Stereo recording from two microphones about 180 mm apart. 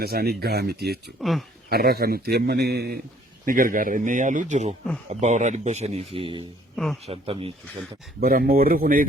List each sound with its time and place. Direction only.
0.0 s a man's voice: 60° right (ahead or behind)
1.2 s speech: centre (ahead or behind)
1.7 s a man's voice: 60° right (ahead or behind)
3.4 s speech: 50° right (ahead or behind); by 6.4 s 30° right (ahead or behind)
6.7 s speech: centre (ahead or behind)
7.0 s speech: 30° right (ahead or behind)
8.2 s speech: 55° right (ahead or behind)